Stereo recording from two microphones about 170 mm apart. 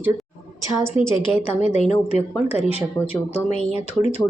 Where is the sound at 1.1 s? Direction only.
30° left (ahead or behind).